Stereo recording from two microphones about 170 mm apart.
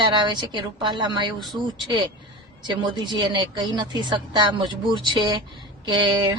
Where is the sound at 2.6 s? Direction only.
25° right (ahead or behind).